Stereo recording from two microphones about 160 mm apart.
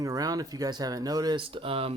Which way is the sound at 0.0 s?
20° right (ahead or behind).